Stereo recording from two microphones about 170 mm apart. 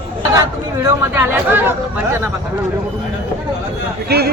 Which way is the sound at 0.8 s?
15° right (ahead or behind).